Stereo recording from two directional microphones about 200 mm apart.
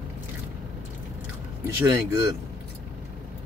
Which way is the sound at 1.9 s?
20° right (ahead or behind).